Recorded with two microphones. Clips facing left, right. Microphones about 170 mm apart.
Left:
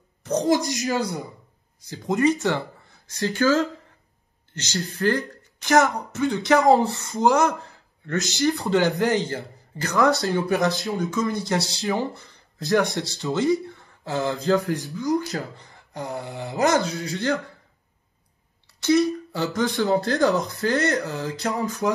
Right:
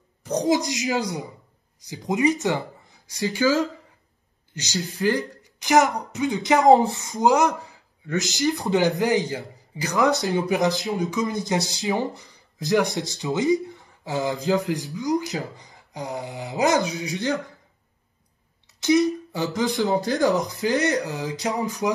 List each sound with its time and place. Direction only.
0.2 s speech: 15° right (ahead or behind)
1.9 s speech: 15° right (ahead or behind)
4.6 s speech: 15° right (ahead or behind)
18.8 s speech: 20° right (ahead or behind)